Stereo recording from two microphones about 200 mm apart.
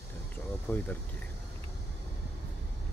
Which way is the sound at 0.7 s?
10° left (ahead or behind).